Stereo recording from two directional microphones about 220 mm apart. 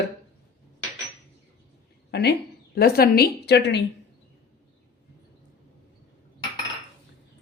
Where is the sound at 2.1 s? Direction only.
50° left (ahead or behind).